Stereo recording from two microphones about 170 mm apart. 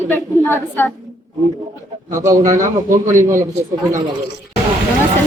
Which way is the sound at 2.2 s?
15° right (ahead or behind).